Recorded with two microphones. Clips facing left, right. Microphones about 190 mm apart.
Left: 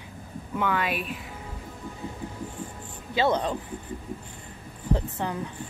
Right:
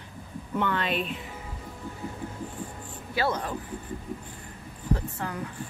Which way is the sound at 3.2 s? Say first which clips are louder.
Left 4 dB; 20° left (ahead or behind).